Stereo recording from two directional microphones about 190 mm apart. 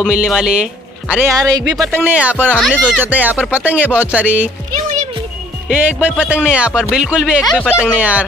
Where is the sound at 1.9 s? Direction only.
10° right (ahead or behind).